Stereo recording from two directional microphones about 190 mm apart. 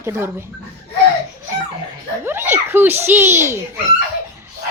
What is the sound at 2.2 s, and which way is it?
A child's voice, 10° right (ahead or behind).